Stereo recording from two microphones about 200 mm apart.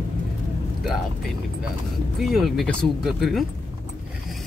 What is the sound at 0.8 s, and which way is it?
Speech, 5° right (ahead or behind).